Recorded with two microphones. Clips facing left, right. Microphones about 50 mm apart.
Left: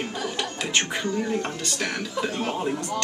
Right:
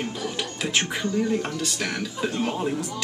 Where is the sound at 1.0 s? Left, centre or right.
Centre.